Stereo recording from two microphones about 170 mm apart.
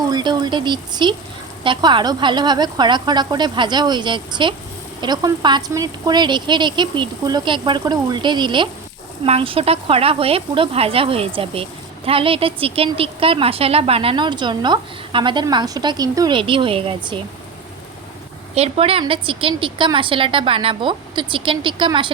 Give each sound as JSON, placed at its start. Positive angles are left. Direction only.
{"t": 0.1, "sound": "a woman's voice", "side_deg": -25}
{"t": 18.5, "sound": "a woman's voice", "side_deg": -35}